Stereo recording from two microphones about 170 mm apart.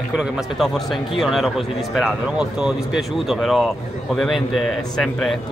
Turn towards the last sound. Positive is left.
turn(degrees=0)  # may be behind; listen again after turning